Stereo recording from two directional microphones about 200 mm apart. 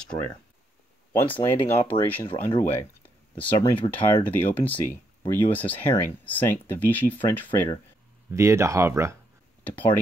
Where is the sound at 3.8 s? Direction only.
25° left (ahead or behind).